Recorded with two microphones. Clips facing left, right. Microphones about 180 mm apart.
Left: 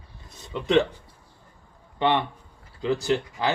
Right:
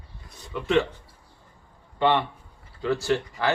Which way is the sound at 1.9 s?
20° left (ahead or behind).